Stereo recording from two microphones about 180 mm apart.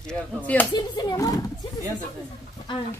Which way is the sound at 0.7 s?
25° left (ahead or behind).